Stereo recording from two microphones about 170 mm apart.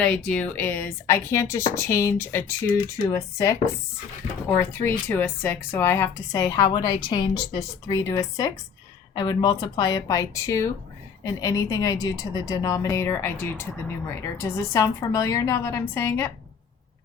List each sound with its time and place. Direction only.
0.0 s a woman's voice: 5° left (ahead or behind)